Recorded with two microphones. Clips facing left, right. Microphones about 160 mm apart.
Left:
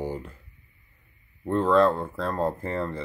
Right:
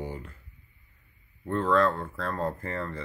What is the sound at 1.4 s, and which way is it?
Speech, 30° left (ahead or behind).